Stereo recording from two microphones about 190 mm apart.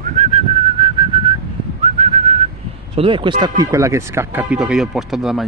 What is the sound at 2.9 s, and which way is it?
Speech, 30° right (ahead or behind).